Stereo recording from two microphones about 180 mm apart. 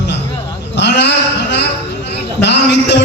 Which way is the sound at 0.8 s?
70° left (ahead or behind).